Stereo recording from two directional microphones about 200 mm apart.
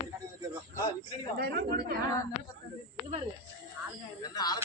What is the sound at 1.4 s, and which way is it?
Speech, 55° right (ahead or behind).